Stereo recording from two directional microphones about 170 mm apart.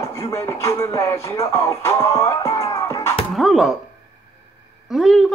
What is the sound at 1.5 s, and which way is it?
Music, 15° left (ahead or behind).